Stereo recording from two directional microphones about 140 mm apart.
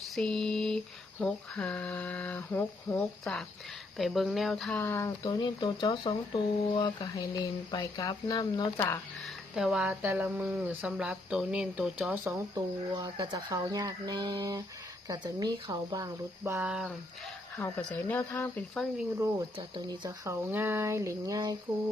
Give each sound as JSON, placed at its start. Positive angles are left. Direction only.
{"t": 0.2, "sound": "speech", "side_deg": 5}
{"t": 1.2, "sound": "a sound", "side_deg": 5}
{"t": 3.9, "sound": "speech", "side_deg": 0}
{"t": 4.8, "sound": "speech", "side_deg": 20}
{"t": 9.6, "sound": "speech", "side_deg": -5}
{"t": 12.9, "sound": "speech", "side_deg": -35}
{"t": 16.4, "sound": "speech", "side_deg": -15}
{"t": 17.6, "sound": "a sound", "side_deg": 15}
{"t": 19.5, "sound": "speech", "side_deg": -35}
{"t": 20.2, "sound": "speech", "side_deg": -15}